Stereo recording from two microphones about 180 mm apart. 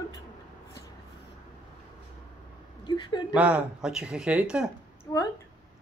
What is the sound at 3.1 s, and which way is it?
Speech, 25° left (ahead or behind).